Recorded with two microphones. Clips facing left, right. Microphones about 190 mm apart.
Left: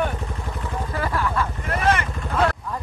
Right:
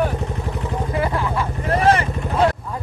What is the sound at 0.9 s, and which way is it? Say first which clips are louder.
Vehicle: right 2 dB; 15° right (ahead or behind).